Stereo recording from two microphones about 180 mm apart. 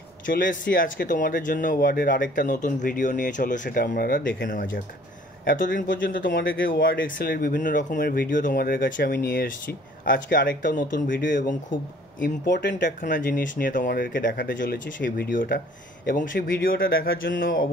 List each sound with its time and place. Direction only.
0.3 s speech: 50° left (ahead or behind)